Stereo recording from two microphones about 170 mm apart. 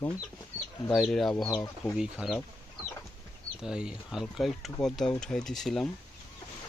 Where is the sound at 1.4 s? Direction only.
20° left (ahead or behind).